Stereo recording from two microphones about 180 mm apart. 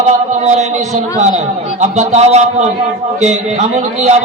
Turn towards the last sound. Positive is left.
turn(degrees=-40)  # may be behind; listen again after turning